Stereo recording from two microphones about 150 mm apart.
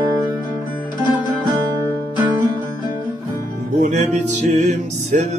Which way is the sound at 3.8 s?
50° right (ahead or behind).